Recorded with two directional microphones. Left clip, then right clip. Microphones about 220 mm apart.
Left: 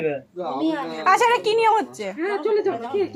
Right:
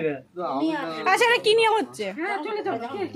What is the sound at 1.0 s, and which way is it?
Speech, 5° right (ahead or behind).